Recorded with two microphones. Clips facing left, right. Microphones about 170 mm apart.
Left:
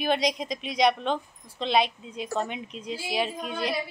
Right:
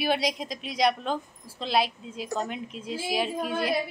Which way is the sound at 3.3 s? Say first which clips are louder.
Right 4 dB; 55° right (ahead or behind).